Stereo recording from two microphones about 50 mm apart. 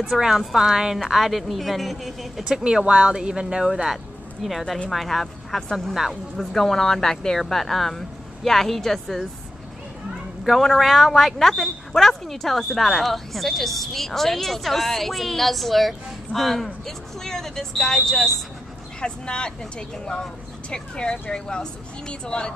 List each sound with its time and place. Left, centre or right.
0.1 s speech: centre
0.9 s speech: centre
2.4 s speech: centre
3.7 s speech: centre
10.4 s speech: centre